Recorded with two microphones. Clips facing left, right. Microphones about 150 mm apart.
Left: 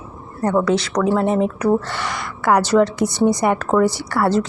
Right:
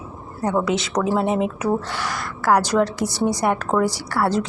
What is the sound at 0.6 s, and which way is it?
A woman's voice, 20° right (ahead or behind).